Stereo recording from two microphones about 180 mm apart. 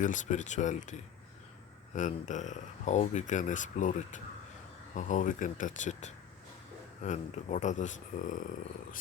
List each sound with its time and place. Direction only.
0.0 s speech: 45° left (ahead or behind)
2.0 s speech: 45° left (ahead or behind)